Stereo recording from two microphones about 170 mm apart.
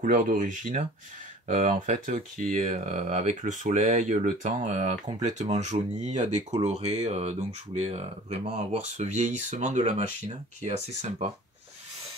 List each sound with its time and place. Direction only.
0.0 s speech: 50° right (ahead or behind)